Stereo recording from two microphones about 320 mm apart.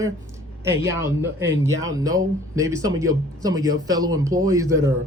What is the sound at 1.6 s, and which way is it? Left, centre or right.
Speech, centre.